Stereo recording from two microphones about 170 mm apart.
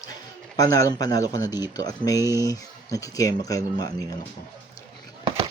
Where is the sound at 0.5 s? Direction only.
20° left (ahead or behind).